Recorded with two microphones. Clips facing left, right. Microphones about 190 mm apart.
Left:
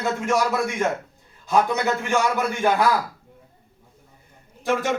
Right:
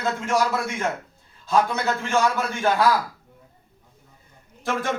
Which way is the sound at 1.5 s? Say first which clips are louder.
Left 1 dB; 15° left (ahead or behind).